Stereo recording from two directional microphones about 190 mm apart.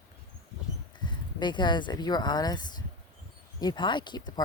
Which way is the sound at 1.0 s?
25° left (ahead or behind).